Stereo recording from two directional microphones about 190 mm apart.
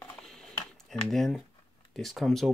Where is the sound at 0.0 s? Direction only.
5° left (ahead or behind).